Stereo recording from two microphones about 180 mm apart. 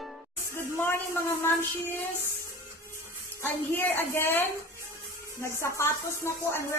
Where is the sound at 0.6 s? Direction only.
10° left (ahead or behind).